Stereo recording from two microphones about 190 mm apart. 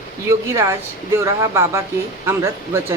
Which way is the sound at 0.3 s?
15° right (ahead or behind).